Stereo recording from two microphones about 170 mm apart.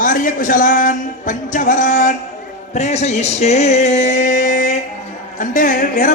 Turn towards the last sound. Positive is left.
turn(degrees=50)  # may be behind; listen again after turning